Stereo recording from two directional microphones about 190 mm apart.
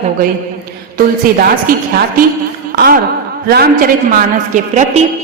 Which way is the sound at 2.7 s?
50° right (ahead or behind).